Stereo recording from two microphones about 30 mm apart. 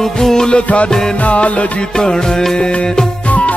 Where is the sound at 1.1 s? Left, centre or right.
Left.